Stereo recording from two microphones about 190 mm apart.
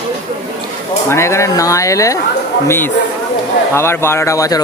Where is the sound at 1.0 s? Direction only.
15° left (ahead or behind).